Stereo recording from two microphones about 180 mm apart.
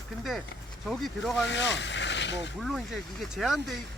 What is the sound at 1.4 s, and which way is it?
Speech, 80° left.